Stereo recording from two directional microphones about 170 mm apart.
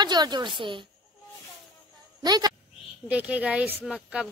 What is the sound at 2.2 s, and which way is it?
Speech, 25° right (ahead or behind).